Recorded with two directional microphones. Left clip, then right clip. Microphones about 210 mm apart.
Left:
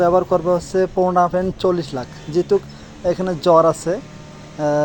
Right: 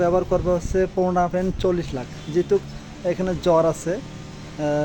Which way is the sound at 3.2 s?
10° left (ahead or behind).